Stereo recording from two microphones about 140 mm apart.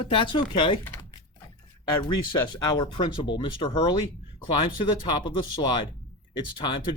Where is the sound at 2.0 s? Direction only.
30° left (ahead or behind).